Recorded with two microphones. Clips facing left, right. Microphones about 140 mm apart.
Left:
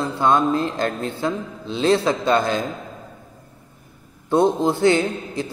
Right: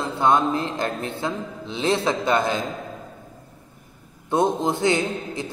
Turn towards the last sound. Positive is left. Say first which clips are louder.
# left 3 dB
turn(degrees=-20)  # may be behind; listen again after turning